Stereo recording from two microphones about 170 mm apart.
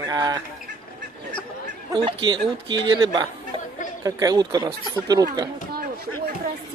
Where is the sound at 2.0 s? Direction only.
30° right (ahead or behind).